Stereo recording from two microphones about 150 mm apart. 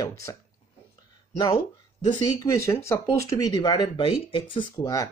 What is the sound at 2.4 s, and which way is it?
Speech, 20° left (ahead or behind).